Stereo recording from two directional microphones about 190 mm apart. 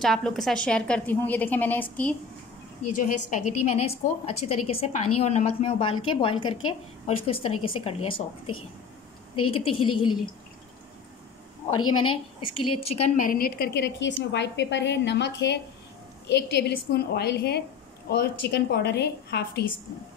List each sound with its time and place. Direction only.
0.0 s a woman's voice: centre (ahead or behind)
2.9 s a woman's voice: 40° left (ahead or behind)
9.3 s speech: 30° left (ahead or behind)
11.9 s a woman's voice: 25° left (ahead or behind); by 19.6 s 60° left (ahead or behind)